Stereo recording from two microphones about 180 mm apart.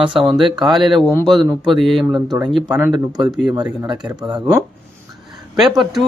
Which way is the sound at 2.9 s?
20° right (ahead or behind).